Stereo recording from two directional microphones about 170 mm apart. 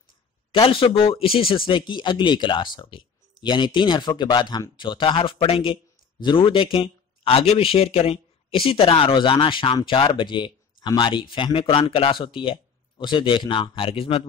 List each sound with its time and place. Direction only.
0.5 s speech: 30° left (ahead or behind)